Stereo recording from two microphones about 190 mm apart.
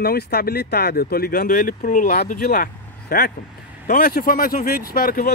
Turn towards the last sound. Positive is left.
turn(degrees=50)  # may be behind; listen again after turning